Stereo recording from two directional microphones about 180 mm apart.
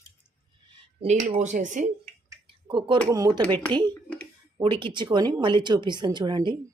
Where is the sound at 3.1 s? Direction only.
20° right (ahead or behind).